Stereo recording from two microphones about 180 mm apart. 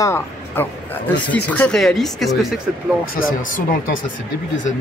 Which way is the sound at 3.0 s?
55° left (ahead or behind).